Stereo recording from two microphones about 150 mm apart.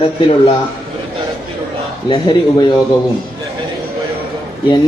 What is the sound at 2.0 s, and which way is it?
Speech, 30° left (ahead or behind).